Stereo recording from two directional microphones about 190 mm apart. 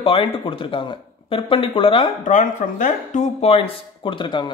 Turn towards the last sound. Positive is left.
turn(degrees=25)  # may be behind; listen again after turning